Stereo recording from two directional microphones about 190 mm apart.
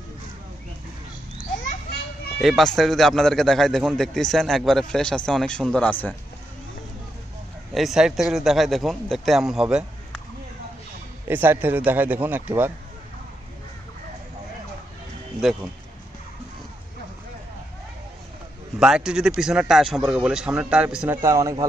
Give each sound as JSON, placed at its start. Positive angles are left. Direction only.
{"t": 2.4, "sound": "a man's voice", "side_deg": 0}
{"t": 7.7, "sound": "a man's voice", "side_deg": 0}
{"t": 11.2, "sound": "a man's voice", "side_deg": -10}
{"t": 18.8, "sound": "a man's voice", "side_deg": -5}
{"t": 21.2, "sound": "a man's voice", "side_deg": -15}